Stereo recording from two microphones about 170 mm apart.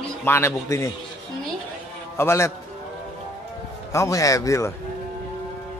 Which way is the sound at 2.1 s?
15° left (ahead or behind).